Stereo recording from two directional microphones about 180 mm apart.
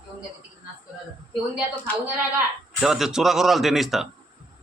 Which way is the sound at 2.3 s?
Centre (ahead or behind).